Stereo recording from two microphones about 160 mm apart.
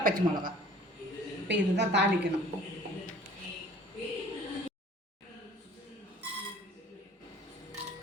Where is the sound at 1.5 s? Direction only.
90° right.